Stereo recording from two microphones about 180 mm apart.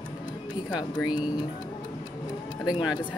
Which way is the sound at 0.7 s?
25° left (ahead or behind).